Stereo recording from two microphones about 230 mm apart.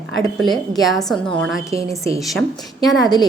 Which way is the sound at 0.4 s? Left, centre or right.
Centre.